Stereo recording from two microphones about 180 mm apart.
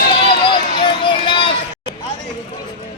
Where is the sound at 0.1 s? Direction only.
30° left (ahead or behind).